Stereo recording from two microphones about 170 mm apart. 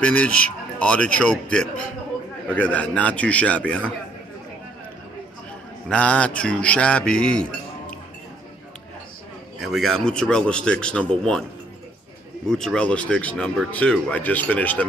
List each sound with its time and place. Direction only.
0.0 s speech: 10° left (ahead or behind)
5.9 s speech: 5° left (ahead or behind)
9.6 s speech: centre (ahead or behind)
12.4 s speech: 5° left (ahead or behind)